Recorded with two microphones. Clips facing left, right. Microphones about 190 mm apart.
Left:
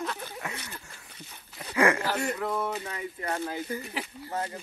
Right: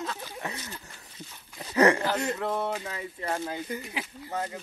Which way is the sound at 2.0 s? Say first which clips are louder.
Right 1 dB; 25° right (ahead or behind).